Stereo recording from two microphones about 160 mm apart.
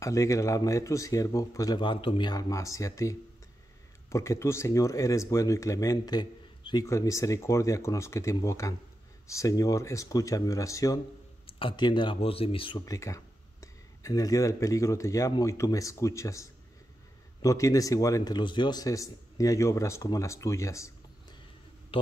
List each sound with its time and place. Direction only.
0.0 s speech: 20° left (ahead or behind)
11.4 s speech: 30° left (ahead or behind)
21.9 s a sound: 35° left (ahead or behind)